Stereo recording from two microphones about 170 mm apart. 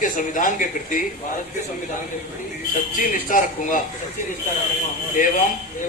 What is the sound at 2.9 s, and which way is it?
Speech, 50° left (ahead or behind).